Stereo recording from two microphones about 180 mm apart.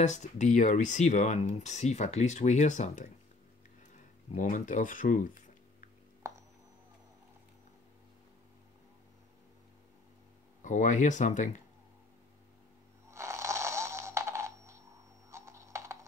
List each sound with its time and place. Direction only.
0.0 s speech: 40° left (ahead or behind)
4.3 s speech: 45° left (ahead or behind)
6.2 s music: 15° right (ahead or behind)
10.6 s speech: 45° left (ahead or behind)
13.1 s a sound: 15° right (ahead or behind)
15.3 s typing: 15° right (ahead or behind)